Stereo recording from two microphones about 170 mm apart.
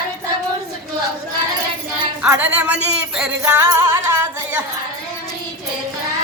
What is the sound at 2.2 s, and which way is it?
Speech, 10° right (ahead or behind).